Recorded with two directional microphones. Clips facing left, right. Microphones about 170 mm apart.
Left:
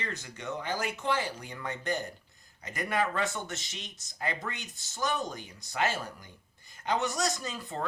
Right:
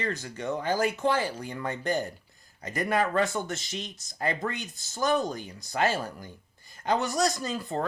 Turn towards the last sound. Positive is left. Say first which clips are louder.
# right 6 dB
turn(degrees=-40)  # may be behind; listen again after turning